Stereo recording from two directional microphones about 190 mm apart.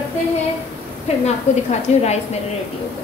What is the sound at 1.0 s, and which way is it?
A woman's voice, 35° left (ahead or behind).